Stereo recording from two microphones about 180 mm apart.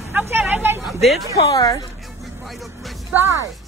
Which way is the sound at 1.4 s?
20° left (ahead or behind).